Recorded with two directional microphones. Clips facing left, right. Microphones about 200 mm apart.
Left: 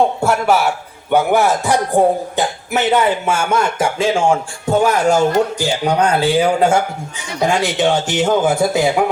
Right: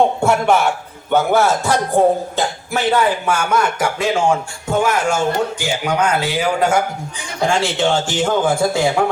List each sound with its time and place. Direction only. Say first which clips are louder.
0.2 s a man's voice: even; centre (ahead or behind)
1.1 s speech: left 1 dB; 15° left (ahead or behind)
4.8 s a man's voice: left 4 dB; 35° left (ahead or behind)
7.4 s speech: left 1 dB; 20° left (ahead or behind)